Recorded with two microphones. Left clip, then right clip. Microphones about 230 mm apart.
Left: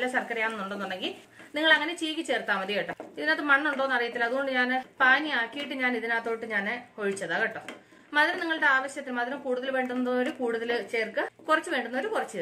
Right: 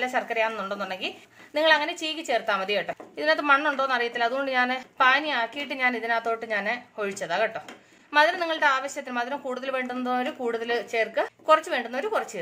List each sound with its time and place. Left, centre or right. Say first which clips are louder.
0.0 s a woman's voice: right 3 dB; right